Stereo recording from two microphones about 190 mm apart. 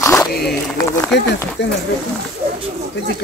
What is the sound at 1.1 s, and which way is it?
Speech, 65° left (ahead or behind).